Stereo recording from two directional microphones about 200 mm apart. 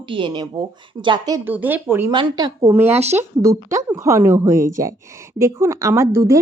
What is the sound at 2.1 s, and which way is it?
Speech, 20° right (ahead or behind).